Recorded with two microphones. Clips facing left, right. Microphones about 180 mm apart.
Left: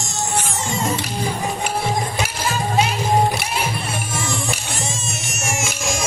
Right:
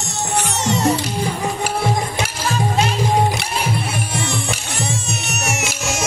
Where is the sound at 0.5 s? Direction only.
75° right (ahead or behind).